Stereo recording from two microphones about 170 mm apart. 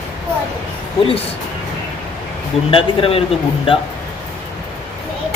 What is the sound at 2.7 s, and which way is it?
Speech, 35° left (ahead or behind).